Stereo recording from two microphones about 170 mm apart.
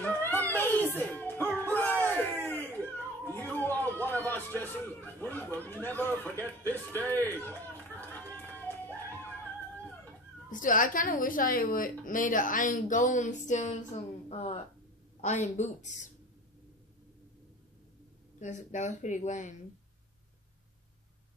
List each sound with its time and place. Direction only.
0.0 s music: 10° left (ahead or behind)
3.3 s a sound: 10° left (ahead or behind)
10.5 s a woman's voice: 50° left (ahead or behind)
18.4 s a woman's voice: 45° left (ahead or behind)